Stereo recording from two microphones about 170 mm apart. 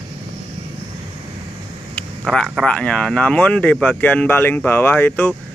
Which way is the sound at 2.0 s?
5° left (ahead or behind).